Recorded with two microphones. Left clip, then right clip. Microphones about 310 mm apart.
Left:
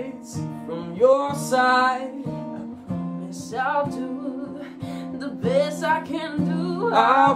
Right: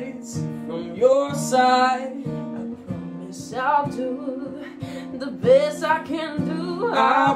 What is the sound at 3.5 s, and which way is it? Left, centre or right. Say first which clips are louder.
Music: right 3 dB; centre.